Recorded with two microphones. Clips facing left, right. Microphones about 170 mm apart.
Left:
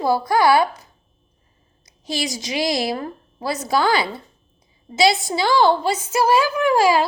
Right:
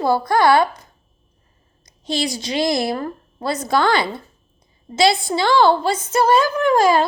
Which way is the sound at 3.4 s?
10° left (ahead or behind).